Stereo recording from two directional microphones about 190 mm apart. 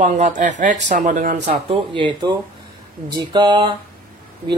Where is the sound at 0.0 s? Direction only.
40° right (ahead or behind).